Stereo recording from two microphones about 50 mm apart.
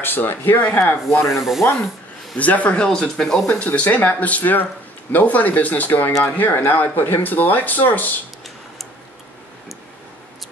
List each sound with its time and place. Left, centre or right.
0.0 s speech: left
1.1 s a sound: left
1.4 s speech: centre
2.3 s speech: left
2.9 s speech: centre
3.5 s speech: left